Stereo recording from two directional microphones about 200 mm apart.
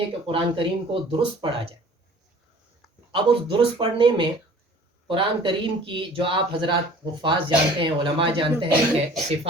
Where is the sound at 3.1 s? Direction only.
25° right (ahead or behind).